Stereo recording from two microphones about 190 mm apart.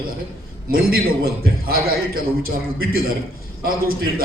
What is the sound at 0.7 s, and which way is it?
Speech, 50° right (ahead or behind).